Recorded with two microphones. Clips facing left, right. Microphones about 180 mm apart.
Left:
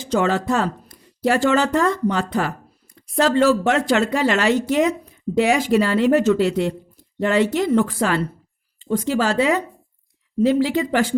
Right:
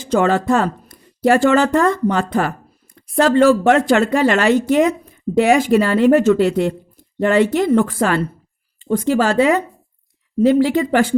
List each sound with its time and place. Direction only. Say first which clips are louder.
0.0 s a woman's voice: right 4 dB; 55° right (ahead or behind)